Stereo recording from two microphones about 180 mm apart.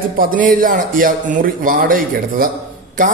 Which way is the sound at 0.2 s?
50° right (ahead or behind).